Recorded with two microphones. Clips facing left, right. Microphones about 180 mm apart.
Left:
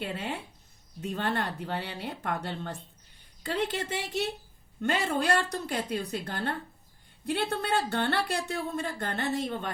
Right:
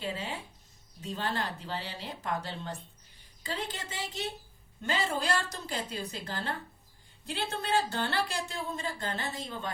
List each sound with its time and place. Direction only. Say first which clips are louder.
0.0 s speech: left 2 dB; 60° left (ahead or behind)